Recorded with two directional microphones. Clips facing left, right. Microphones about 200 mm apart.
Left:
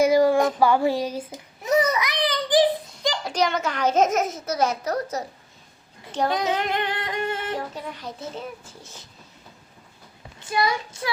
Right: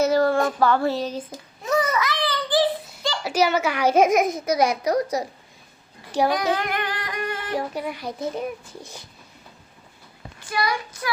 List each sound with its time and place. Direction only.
0.0 s child singing: 10° left (ahead or behind)
3.2 s a child's voice: 5° right (ahead or behind)
6.3 s music: 20° left (ahead or behind)
7.5 s a child's voice: 10° right (ahead or behind)
10.4 s speech: 25° left (ahead or behind)